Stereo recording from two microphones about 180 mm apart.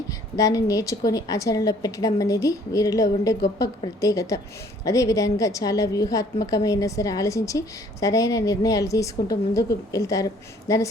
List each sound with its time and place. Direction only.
0.1 s a woman's voice: 20° left (ahead or behind)